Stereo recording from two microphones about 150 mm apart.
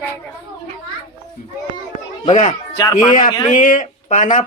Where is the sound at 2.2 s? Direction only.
50° left (ahead or behind).